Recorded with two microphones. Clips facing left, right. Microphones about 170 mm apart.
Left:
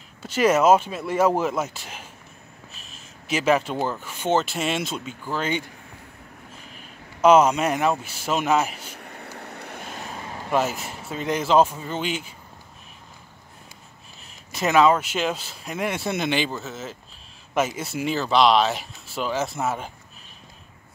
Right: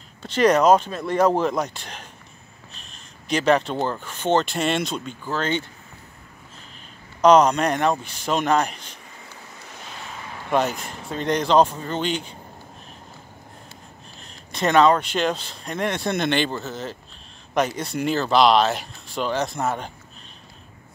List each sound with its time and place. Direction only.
0.2 s speech: 5° left (ahead or behind)
7.2 s speech: 5° left (ahead or behind)
9.0 s vehicle: 65° left (ahead or behind); by 10.5 s 40° left (ahead or behind)
10.5 s speech: 5° left (ahead or behind)
14.2 s speech: 5° left (ahead or behind)